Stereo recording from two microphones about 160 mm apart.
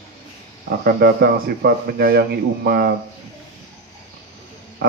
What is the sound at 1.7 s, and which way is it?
Speech, 85° right.